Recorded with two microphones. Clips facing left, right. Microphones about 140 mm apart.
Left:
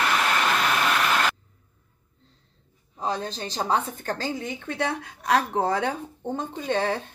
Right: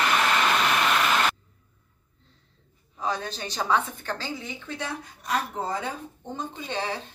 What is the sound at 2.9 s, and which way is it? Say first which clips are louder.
A woman's voice: left 1 dB; 30° left (ahead or behind).